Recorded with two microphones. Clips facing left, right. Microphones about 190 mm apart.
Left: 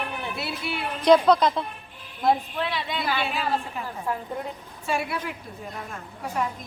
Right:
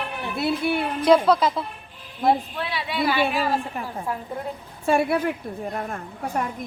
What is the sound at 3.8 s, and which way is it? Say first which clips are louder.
Speech: right 1 dB; 55° right (ahead or behind).